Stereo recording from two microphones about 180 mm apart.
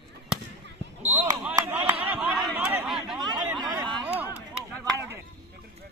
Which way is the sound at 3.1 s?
25° right (ahead or behind).